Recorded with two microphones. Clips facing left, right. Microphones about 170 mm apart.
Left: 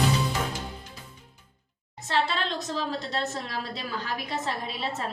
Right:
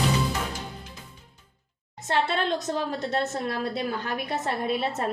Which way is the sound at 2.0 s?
55° right (ahead or behind).